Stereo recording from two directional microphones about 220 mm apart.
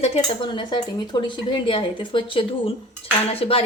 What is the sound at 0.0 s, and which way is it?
A woman's voice, 25° left (ahead or behind).